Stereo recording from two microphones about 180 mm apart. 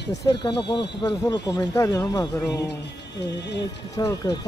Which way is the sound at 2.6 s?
70° left (ahead or behind).